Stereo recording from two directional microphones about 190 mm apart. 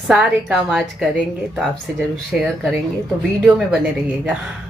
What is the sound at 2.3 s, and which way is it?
Speech, centre (ahead or behind).